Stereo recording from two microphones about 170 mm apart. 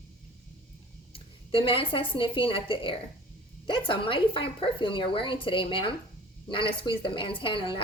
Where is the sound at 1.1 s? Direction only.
30° left (ahead or behind).